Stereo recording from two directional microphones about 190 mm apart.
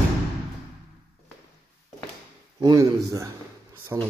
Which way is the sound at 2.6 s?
20° right (ahead or behind).